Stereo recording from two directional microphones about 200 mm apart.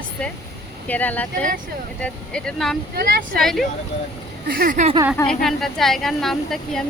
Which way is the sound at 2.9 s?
50° right (ahead or behind).